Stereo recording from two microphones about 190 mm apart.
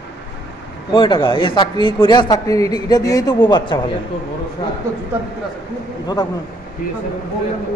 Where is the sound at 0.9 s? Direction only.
25° left (ahead or behind).